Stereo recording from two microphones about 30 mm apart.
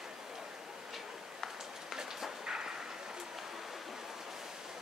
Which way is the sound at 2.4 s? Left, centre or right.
Right.